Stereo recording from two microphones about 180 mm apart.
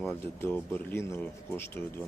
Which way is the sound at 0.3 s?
10° left (ahead or behind).